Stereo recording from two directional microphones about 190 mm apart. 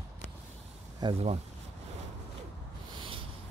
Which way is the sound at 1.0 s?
30° right (ahead or behind).